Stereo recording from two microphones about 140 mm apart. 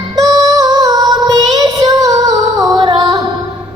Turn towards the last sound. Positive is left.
turn(degrees=-25)  # may be behind; listen again after turning